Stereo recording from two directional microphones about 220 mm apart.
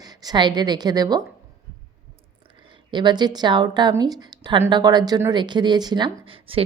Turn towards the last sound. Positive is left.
turn(degrees=-25)  # may be behind; listen again after turning